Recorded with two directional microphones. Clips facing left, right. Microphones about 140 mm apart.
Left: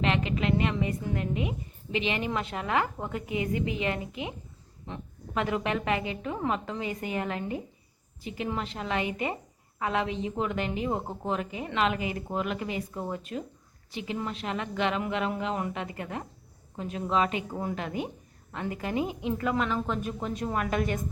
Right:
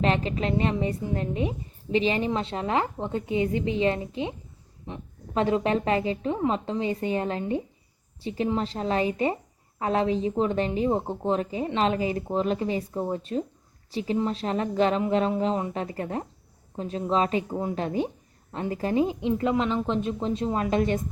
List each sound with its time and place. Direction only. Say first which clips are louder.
0.0 s a woman's voice: right 2 dB; 35° right (ahead or behind)
4.9 s a woman's voice: right 2 dB; 20° right (ahead or behind)
5.3 s a woman's voice: right 5 dB; 30° right (ahead or behind)
17.5 s a woman's voice: right 4 dB; 20° right (ahead or behind)
17.7 s a woman's voice: right 6 dB; 30° right (ahead or behind)